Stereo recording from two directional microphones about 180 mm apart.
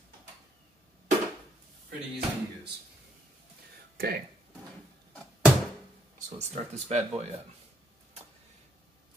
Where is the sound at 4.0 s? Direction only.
60° right (ahead or behind).